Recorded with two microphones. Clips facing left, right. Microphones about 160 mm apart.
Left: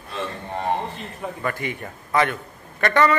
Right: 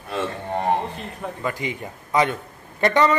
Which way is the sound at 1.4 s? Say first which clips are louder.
Even; 15° right (ahead or behind).